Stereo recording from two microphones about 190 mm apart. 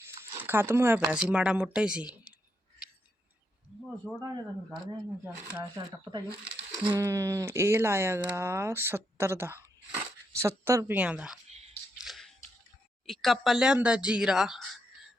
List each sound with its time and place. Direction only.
0.0 s speech: 10° right (ahead or behind)
4.1 s speech: 5° right (ahead or behind)
5.5 s speech: 20° right (ahead or behind); by 11.3 s 5° right (ahead or behind)
11.9 s a sound: centre (ahead or behind)
13.1 s speech: centre (ahead or behind)